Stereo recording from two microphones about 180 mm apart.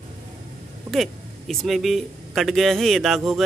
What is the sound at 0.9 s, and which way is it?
Speech, centre (ahead or behind).